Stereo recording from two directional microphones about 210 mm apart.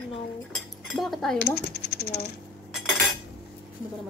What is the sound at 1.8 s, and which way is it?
Speech, 50° left (ahead or behind).